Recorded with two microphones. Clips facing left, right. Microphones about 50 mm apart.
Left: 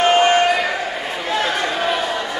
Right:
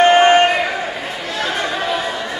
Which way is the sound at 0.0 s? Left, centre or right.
Right.